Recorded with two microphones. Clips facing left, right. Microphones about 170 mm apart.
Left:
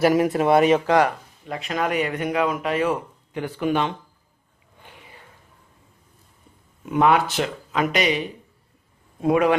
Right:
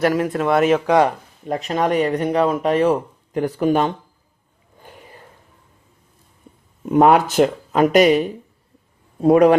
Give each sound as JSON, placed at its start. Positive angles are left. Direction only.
{"t": 0.0, "sound": "speech", "side_deg": 15}
{"t": 0.5, "sound": "speech", "side_deg": 0}
{"t": 1.0, "sound": "speech", "side_deg": -40}
{"t": 4.8, "sound": "a sound", "side_deg": -40}
{"t": 6.8, "sound": "speech", "side_deg": -40}